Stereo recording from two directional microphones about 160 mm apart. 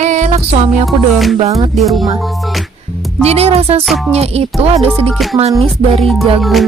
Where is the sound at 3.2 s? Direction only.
40° right (ahead or behind).